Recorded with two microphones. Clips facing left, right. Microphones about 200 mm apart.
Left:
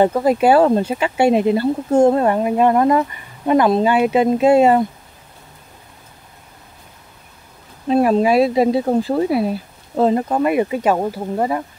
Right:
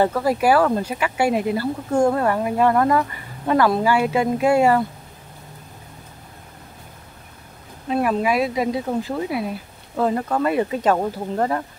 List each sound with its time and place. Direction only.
0.0 s speech: 20° left (ahead or behind)
7.9 s speech: 30° left (ahead or behind); by 11.6 s 10° left (ahead or behind)